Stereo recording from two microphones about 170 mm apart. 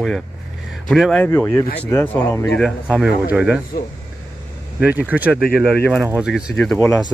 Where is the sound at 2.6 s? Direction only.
5° right (ahead or behind).